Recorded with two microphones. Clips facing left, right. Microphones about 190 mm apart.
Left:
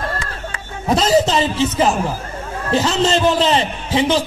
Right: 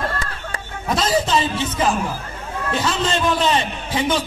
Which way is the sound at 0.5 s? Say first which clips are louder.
Right 2 dB; 40° right (ahead or behind).